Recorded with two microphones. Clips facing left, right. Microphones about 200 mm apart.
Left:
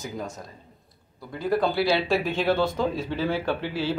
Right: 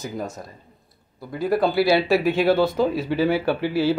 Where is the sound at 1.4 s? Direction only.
10° right (ahead or behind).